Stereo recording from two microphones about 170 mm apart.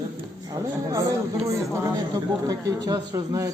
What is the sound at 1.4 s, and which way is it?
Speech, 20° right (ahead or behind).